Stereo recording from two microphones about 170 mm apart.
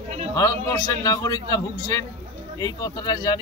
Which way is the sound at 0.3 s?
20° left (ahead or behind).